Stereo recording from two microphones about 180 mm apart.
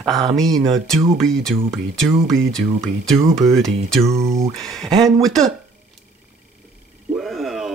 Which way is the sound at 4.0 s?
15° right (ahead or behind).